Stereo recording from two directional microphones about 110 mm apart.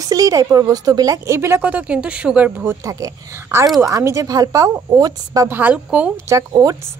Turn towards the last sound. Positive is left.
turn(degrees=-35)  # may be behind; listen again after turning